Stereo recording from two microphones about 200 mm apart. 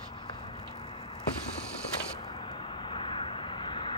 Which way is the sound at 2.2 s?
25° left (ahead or behind).